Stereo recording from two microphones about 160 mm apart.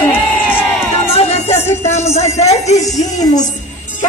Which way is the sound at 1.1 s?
40° left (ahead or behind).